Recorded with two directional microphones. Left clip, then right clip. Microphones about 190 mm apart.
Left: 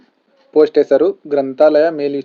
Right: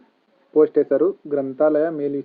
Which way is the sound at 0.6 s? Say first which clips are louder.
Left 5 dB; 20° left (ahead or behind).